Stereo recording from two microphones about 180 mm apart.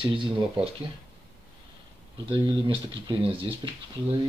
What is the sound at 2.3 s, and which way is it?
Speech, 30° right (ahead or behind).